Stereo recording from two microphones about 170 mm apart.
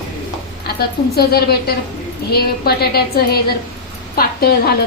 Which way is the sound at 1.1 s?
70° left (ahead or behind).